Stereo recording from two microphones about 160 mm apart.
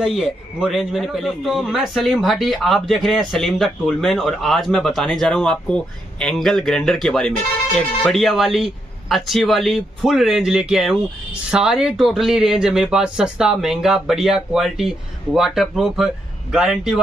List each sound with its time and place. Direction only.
0.0 s a man's voice: 5° right (ahead or behind)